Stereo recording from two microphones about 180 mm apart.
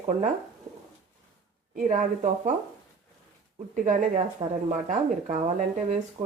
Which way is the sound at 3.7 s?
45° right (ahead or behind).